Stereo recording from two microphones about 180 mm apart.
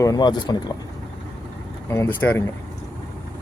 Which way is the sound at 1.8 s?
15° left (ahead or behind).